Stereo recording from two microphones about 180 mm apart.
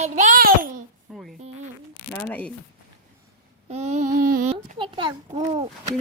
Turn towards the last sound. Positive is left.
turn(degrees=-35)  # may be behind; listen again after turning